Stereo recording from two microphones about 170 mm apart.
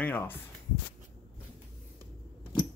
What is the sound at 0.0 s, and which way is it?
Speech, 10° left (ahead or behind).